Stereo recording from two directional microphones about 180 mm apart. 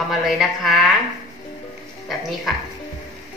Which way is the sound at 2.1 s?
Centre (ahead or behind).